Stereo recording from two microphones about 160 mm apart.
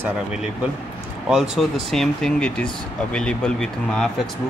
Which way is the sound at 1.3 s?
Centre (ahead or behind).